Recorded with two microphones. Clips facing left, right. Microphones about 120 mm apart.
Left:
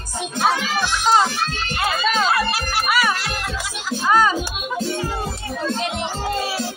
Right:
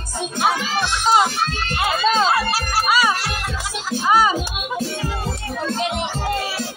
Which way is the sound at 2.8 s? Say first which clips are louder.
Right 1 dB; 15° right (ahead or behind).